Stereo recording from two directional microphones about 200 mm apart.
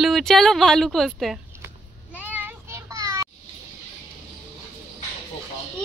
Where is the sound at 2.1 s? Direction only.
10° right (ahead or behind).